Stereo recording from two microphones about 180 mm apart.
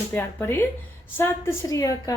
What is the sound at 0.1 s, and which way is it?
A woman's voice, 10° left (ahead or behind).